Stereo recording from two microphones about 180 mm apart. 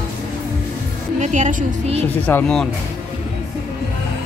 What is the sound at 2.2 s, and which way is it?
Speech, 5° left (ahead or behind).